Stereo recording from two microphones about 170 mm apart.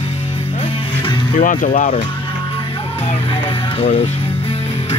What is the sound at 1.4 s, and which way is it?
Speech, 55° left (ahead or behind).